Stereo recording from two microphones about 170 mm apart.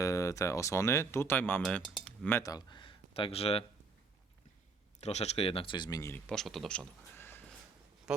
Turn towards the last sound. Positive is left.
turn(degrees=15)  # may be behind; listen again after turning